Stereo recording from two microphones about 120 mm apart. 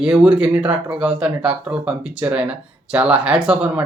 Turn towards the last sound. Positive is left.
turn(degrees=-10)  # may be behind; listen again after turning